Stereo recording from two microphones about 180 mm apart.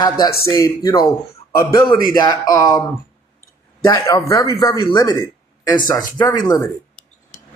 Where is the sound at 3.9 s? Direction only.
20° left (ahead or behind).